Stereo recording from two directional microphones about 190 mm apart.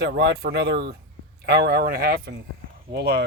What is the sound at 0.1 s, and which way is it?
Speech, 60° right (ahead or behind).